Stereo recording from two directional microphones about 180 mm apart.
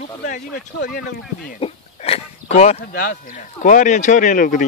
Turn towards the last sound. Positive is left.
turn(degrees=45)  # may be behind; listen again after turning